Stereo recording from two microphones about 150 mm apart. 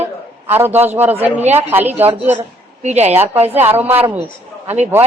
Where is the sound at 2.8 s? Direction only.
50° right (ahead or behind).